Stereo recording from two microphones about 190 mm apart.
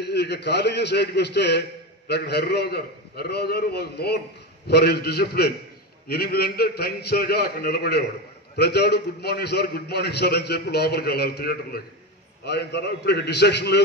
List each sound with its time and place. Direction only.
0.0 s a man's voice: 60° left (ahead or behind)